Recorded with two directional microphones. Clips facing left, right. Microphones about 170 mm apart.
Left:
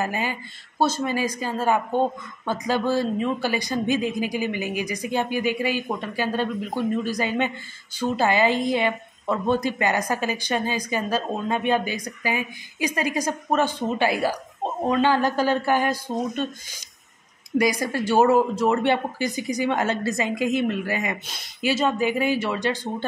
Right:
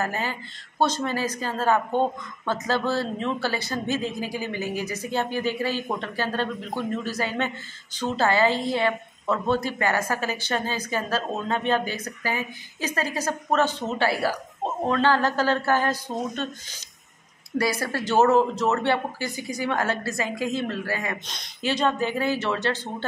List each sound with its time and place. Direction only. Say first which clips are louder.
0.0 s a woman's voice: left 2 dB; 15° left (ahead or behind)
17.6 s a woman's voice: left 3 dB; 15° left (ahead or behind)